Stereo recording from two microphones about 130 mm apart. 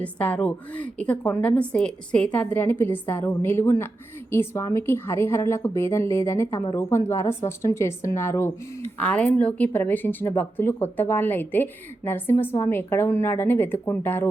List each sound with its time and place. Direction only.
0.0 s a woman's voice: 10° left (ahead or behind)